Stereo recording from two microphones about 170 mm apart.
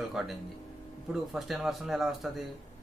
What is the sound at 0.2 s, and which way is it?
Speech, 5° right (ahead or behind).